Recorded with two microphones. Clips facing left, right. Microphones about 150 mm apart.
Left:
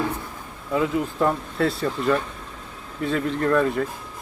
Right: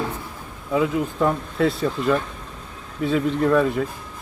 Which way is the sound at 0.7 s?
10° right (ahead or behind).